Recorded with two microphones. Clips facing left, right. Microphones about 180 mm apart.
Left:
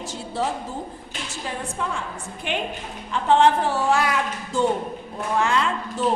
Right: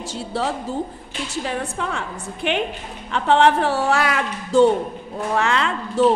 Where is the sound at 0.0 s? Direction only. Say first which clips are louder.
Right 2 dB; 75° right (ahead or behind).